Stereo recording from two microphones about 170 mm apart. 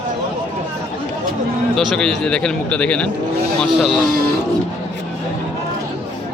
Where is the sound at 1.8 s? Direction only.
5° left (ahead or behind).